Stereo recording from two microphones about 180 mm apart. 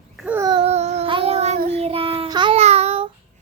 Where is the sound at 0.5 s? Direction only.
35° right (ahead or behind).